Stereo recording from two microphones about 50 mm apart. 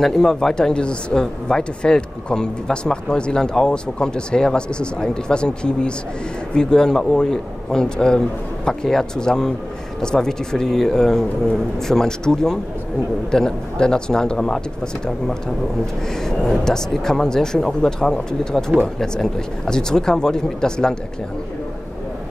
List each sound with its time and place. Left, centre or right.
0.0 s speech: centre
16.3 s speech: centre